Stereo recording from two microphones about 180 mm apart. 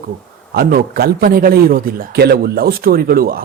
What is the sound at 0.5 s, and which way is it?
A man's voice, 55° right (ahead or behind).